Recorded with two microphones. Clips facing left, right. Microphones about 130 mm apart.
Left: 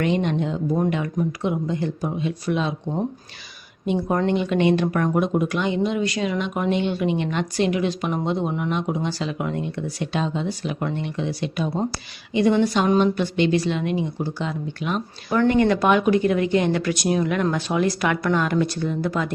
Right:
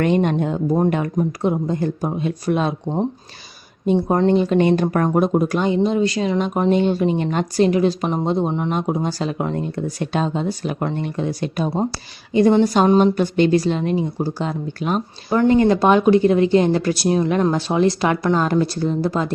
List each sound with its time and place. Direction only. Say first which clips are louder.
0.0 s speech: right 4 dB; 50° right (ahead or behind)
3.8 s speech: right 5 dB; 35° right (ahead or behind)
15.4 s speech: right 3 dB; 25° right (ahead or behind)